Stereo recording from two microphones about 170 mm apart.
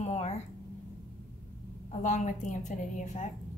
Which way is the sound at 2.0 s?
45° left (ahead or behind).